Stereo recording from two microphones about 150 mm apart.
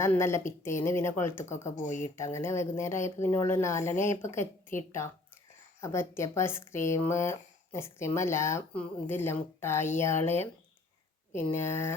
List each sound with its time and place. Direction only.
0.0 s speech: 20° left (ahead or behind)
1.7 s speech: 55° left (ahead or behind)
2.1 s speech: 20° left (ahead or behind)
5.8 s speech: 20° left (ahead or behind)